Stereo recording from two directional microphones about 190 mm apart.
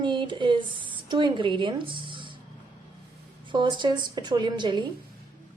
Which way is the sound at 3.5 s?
25° right (ahead or behind).